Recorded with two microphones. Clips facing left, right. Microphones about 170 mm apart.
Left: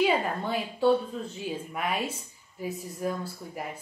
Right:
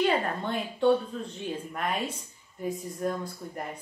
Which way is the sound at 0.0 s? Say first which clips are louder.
Left 1 dB; 5° left (ahead or behind).